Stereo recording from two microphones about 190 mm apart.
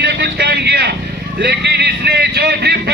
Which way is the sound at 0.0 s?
60° right (ahead or behind).